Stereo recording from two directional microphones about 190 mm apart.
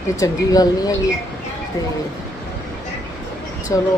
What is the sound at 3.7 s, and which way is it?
Speech, 20° left (ahead or behind).